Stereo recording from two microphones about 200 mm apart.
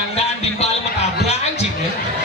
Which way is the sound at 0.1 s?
30° left (ahead or behind).